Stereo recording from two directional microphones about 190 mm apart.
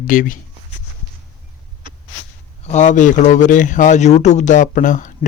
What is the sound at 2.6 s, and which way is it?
A man's voice, 40° left (ahead or behind).